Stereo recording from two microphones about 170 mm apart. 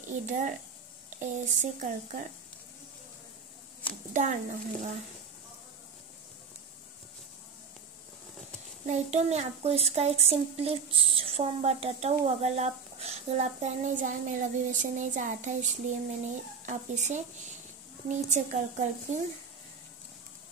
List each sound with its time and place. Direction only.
0.1 s a woman's voice: 50° right (ahead or behind)
4.1 s a woman's voice: 45° right (ahead or behind)
8.8 s a woman's voice: 40° right (ahead or behind)